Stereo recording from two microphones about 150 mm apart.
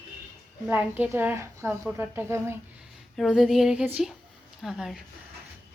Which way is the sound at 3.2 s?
Centre (ahead or behind).